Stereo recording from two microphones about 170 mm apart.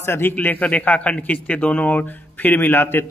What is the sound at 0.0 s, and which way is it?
A man's voice, 15° left (ahead or behind).